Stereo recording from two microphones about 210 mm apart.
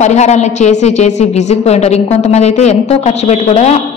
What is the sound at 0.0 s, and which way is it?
A woman's voice, 35° left (ahead or behind).